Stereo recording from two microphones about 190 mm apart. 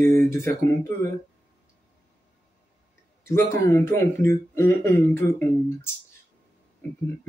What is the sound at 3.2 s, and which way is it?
Speech, 15° left (ahead or behind).